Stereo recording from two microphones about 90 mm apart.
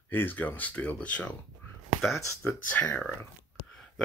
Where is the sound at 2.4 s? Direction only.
20° left (ahead or behind).